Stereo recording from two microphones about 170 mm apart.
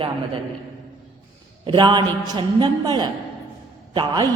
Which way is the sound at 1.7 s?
25° right (ahead or behind).